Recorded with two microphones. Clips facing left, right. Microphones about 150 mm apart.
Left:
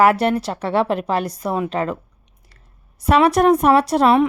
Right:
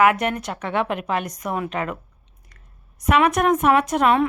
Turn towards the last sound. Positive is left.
turn(degrees=35)  # may be behind; listen again after turning